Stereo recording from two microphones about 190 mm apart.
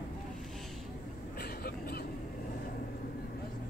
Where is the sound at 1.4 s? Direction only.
55° left (ahead or behind).